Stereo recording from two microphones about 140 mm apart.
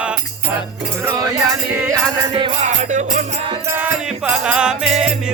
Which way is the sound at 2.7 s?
60° right (ahead or behind).